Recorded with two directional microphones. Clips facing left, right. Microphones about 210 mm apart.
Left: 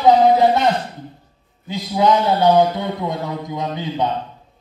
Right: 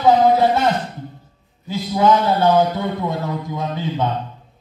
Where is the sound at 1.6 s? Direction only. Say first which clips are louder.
Right 1 dB; 15° left (ahead or behind).